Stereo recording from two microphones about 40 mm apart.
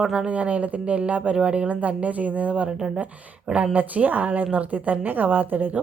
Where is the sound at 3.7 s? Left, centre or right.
Right.